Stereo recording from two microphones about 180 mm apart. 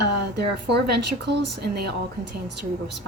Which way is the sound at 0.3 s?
65° right (ahead or behind).